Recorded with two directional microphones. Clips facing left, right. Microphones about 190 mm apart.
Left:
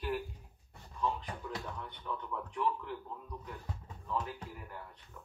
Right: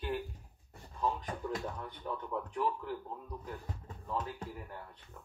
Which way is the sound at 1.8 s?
40° right (ahead or behind).